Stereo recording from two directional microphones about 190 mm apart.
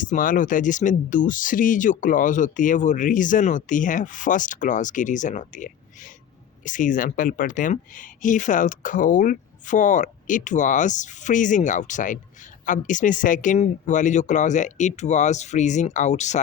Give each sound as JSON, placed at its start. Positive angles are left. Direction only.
{"t": 0.0, "sound": "speech", "side_deg": 45}